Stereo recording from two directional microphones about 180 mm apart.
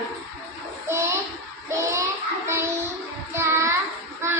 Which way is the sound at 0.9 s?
15° right (ahead or behind).